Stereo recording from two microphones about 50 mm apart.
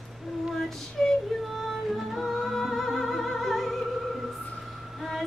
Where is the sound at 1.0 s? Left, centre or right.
Centre.